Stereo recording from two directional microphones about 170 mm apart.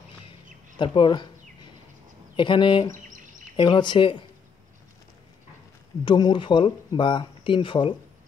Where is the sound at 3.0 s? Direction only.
50° right (ahead or behind).